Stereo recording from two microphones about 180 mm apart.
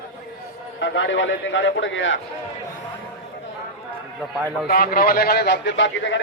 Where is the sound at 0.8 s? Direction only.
90° left.